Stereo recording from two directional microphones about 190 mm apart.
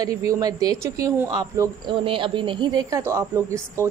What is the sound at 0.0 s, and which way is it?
A woman's voice, 15° right (ahead or behind).